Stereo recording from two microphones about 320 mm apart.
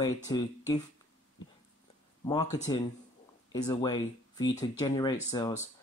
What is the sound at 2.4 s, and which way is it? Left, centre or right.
Speech, centre.